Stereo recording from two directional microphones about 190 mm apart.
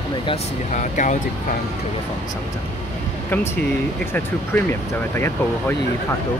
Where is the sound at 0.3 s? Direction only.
40° left (ahead or behind).